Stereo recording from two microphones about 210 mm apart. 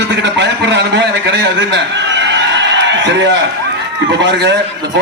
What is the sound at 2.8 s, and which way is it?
A man's voice, 60° right (ahead or behind).